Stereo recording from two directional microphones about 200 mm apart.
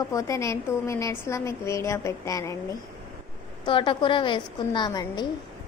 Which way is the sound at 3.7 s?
25° left (ahead or behind).